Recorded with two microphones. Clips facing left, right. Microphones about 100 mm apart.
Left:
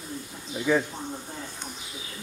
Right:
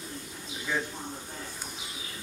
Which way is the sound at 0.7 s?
80° left.